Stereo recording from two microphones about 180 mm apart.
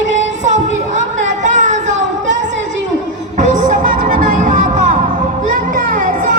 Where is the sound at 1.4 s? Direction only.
45° right (ahead or behind).